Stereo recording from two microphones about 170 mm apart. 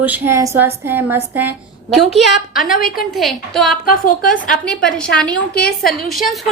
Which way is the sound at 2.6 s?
55° left (ahead or behind).